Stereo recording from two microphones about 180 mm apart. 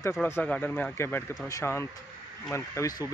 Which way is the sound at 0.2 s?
10° left (ahead or behind).